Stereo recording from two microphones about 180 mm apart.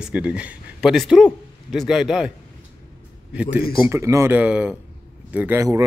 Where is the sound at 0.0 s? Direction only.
5° right (ahead or behind).